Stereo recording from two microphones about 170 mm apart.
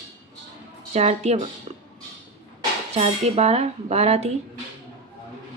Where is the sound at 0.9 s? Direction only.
40° right (ahead or behind).